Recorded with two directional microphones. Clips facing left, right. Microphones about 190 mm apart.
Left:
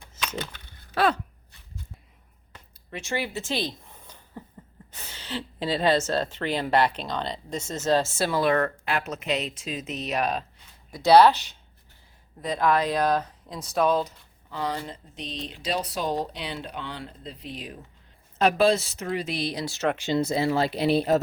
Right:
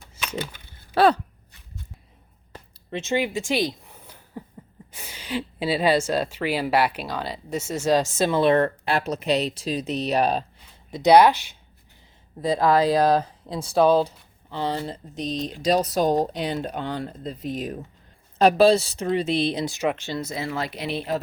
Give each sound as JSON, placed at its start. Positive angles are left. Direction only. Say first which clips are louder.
{"t": 0.2, "sound": "a sound", "louder": "right 2 dB", "side_deg": -10}
{"t": 0.9, "sound": "speech", "louder": "right 5 dB", "side_deg": -30}
{"t": 2.9, "sound": "a woman's voice", "louder": "right 6 dB", "side_deg": -20}
{"t": 10.9, "sound": "speech", "louder": "right 1 dB", "side_deg": -15}
{"t": 12.4, "sound": "speech", "louder": "right 4 dB", "side_deg": -30}
{"t": 18.3, "sound": "speech", "louder": "right 5 dB", "side_deg": -35}
{"t": 20.0, "sound": "speech", "louder": "left 5 dB", "side_deg": 20}
{"t": 20.2, "sound": "speech", "louder": "left 5 dB", "side_deg": 30}